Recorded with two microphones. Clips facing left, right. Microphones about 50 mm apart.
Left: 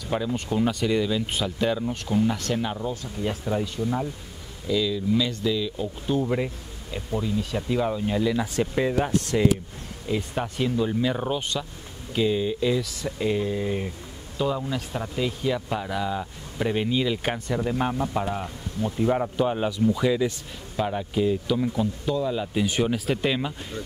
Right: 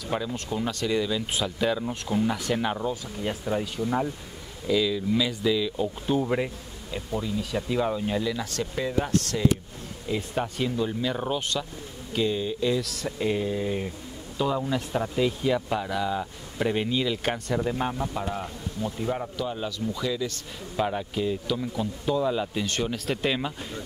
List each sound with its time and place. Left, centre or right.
0.1 s speech: centre
8.3 s speech: centre
10.0 s speech: centre; by 20.3 s left
20.7 s speech: centre
22.0 s speech: centre
22.5 s speech: centre